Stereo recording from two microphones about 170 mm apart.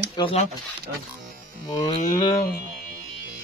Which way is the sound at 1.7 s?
25° left (ahead or behind).